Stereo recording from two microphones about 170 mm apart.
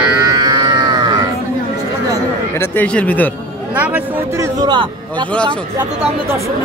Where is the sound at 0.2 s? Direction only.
25° right (ahead or behind).